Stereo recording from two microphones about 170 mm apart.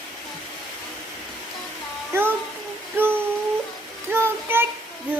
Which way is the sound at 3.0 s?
10° right (ahead or behind).